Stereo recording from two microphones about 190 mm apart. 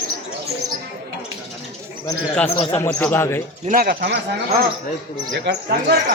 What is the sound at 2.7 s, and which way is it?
Speech, 10° left (ahead or behind).